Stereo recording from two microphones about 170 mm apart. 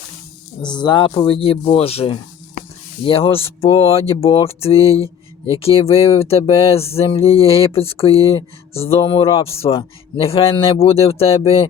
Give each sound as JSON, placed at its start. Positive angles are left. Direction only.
{"t": 0.6, "sound": "speech", "side_deg": 25}